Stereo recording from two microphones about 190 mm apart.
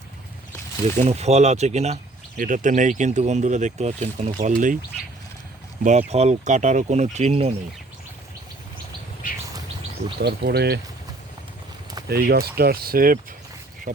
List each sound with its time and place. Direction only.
1.0 s speech: 35° right (ahead or behind)
5.8 s speech: 35° right (ahead or behind)
10.2 s speech: 60° right (ahead or behind)
12.0 s speech: 55° right (ahead or behind)